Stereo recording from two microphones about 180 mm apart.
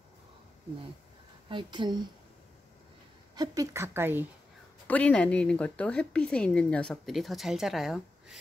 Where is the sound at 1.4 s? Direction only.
25° right (ahead or behind).